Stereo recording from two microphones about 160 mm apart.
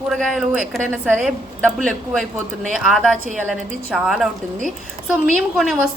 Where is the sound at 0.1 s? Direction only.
Centre (ahead or behind).